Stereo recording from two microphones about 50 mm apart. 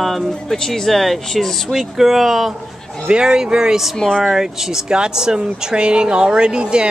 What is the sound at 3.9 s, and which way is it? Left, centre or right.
Speech, centre.